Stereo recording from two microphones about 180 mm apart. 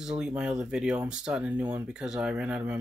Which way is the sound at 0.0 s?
5° right (ahead or behind).